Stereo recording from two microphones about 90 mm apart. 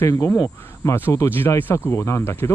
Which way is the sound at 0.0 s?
35° left (ahead or behind).